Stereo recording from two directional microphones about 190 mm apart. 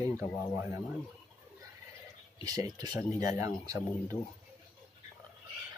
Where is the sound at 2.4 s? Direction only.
20° right (ahead or behind).